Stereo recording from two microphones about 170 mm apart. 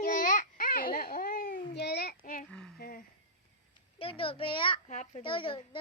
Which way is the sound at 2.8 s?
60° left (ahead or behind).